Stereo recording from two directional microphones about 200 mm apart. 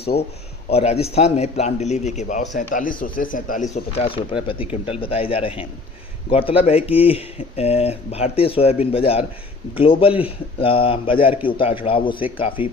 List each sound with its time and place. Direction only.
0.7 s a man's voice: 30° left (ahead or behind)